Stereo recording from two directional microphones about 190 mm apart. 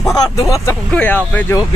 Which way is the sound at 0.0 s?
15° left (ahead or behind).